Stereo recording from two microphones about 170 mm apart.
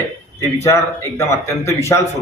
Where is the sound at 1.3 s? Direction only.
15° left (ahead or behind).